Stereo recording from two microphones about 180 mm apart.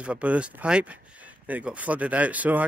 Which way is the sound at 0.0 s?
5° right (ahead or behind).